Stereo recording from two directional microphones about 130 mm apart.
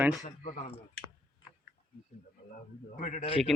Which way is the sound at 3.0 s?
60° left (ahead or behind).